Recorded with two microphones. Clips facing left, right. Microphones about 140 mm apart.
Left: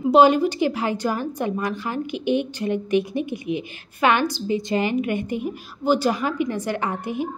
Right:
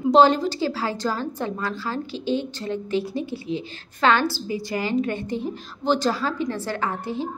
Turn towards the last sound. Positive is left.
turn(degrees=15)  # may be behind; listen again after turning